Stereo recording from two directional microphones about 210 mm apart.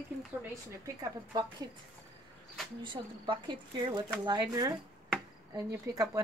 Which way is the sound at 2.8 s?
20° right (ahead or behind).